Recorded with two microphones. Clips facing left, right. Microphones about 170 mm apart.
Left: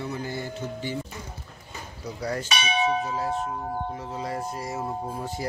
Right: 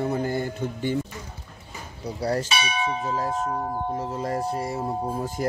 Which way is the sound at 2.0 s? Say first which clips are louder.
Right 5 dB; 30° right (ahead or behind).